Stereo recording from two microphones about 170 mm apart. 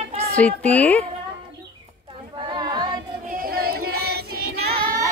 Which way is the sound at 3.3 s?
60° right (ahead or behind).